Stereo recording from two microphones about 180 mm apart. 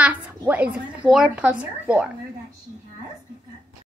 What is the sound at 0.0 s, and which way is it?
A woman's voice, 10° right (ahead or behind).